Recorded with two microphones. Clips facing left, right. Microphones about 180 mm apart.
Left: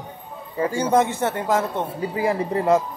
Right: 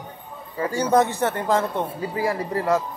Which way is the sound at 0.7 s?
10° left (ahead or behind).